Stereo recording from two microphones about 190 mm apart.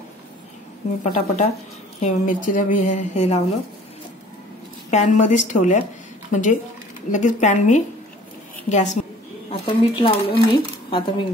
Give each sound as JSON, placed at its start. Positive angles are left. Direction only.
{"t": 1.0, "sound": "speech", "side_deg": 40}
{"t": 4.9, "sound": "a woman's voice", "side_deg": 40}
{"t": 9.5, "sound": "speech", "side_deg": 25}